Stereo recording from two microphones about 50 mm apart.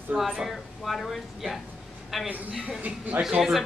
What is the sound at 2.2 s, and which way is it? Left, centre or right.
Speech, right.